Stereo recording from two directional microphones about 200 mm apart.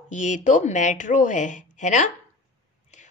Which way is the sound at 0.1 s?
40° left (ahead or behind).